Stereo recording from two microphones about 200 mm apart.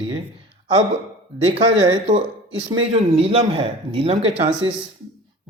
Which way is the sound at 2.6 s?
25° right (ahead or behind).